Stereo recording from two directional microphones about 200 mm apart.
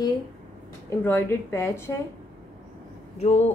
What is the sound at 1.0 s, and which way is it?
Speech, 10° left (ahead or behind).